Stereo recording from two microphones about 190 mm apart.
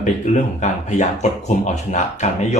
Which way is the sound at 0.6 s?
40° left (ahead or behind).